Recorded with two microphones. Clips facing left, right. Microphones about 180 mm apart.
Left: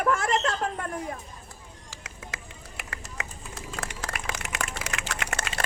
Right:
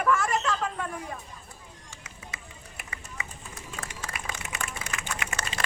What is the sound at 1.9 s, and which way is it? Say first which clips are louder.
Pigeon: left 4 dB; 90° left.